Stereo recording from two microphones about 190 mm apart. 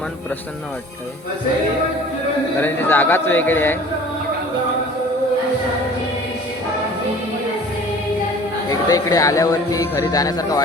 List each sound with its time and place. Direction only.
2.6 s a man's voice: 10° left (ahead or behind)
8.9 s speech: 20° left (ahead or behind)